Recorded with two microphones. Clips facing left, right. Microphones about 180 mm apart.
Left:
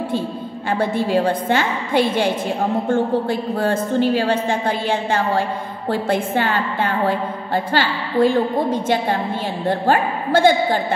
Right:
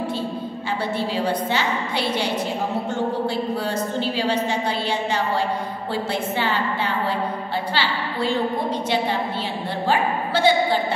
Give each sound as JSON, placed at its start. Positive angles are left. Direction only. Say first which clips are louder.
{"t": 0.7, "sound": "a woman's voice", "louder": "left 7 dB", "side_deg": 50}